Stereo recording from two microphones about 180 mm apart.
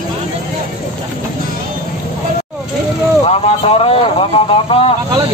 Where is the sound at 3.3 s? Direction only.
35° left (ahead or behind).